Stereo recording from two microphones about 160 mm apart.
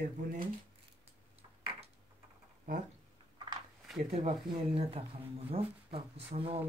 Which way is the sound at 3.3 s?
30° right (ahead or behind).